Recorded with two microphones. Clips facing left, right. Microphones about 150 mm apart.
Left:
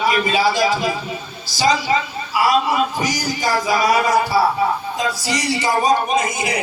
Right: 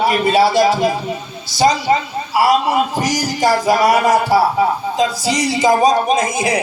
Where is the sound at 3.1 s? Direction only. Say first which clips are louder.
Right 5 dB; 85° right.